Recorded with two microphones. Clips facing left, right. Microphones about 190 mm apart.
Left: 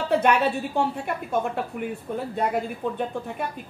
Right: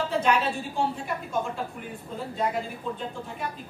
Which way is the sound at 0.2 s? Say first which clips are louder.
Left 4 dB; 60° left (ahead or behind).